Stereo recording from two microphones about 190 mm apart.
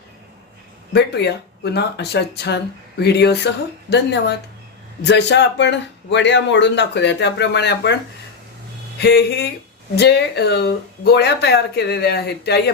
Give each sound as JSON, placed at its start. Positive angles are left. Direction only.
{"t": 0.9, "sound": "speech", "side_deg": 60}
{"t": 9.0, "sound": "speech", "side_deg": 60}